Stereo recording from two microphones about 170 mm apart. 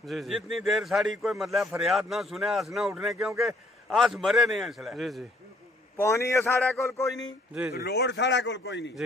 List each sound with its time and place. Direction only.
0.0 s speech: centre (ahead or behind)
5.9 s a man's voice: 15° left (ahead or behind)
7.7 s a man's voice: 75° left (ahead or behind)